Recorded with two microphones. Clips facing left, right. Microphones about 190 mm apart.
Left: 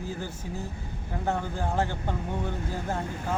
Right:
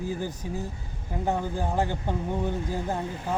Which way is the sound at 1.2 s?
15° right (ahead or behind).